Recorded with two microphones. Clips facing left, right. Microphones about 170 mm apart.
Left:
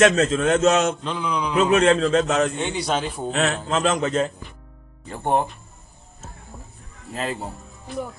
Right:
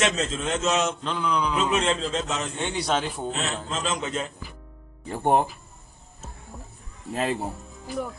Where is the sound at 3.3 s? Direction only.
70° left (ahead or behind); by 4.3 s 45° left (ahead or behind).